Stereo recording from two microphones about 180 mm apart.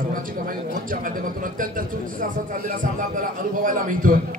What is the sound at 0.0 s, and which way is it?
A man's voice, 50° right (ahead or behind).